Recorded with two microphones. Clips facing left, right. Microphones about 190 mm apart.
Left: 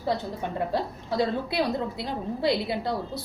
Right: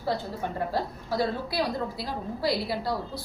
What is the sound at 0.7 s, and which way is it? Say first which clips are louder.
A woman's voice: left 1 dB; 20° left (ahead or behind).